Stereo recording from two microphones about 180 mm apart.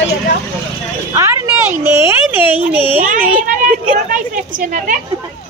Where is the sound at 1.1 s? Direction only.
15° right (ahead or behind).